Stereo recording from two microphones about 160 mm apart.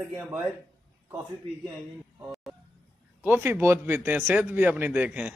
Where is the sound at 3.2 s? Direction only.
10° right (ahead or behind).